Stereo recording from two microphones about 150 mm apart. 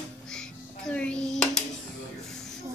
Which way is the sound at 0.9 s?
10° left (ahead or behind).